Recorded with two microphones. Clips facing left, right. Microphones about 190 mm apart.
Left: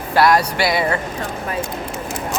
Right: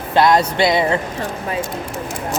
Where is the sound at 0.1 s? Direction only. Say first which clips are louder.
Right 1 dB; 20° right (ahead or behind).